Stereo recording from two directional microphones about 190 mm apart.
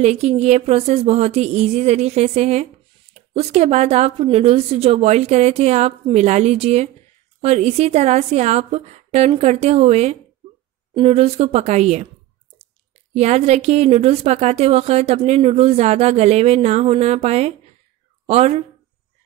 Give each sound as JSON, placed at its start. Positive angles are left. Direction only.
{"t": 0.0, "sound": "speech", "side_deg": -35}
{"t": 13.1, "sound": "a woman's voice", "side_deg": -35}